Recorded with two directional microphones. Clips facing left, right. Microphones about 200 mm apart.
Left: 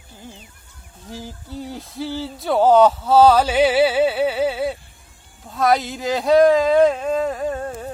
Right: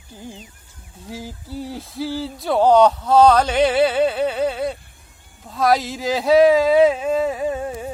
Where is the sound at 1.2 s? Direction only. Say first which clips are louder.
Right 1 dB; 5° right (ahead or behind).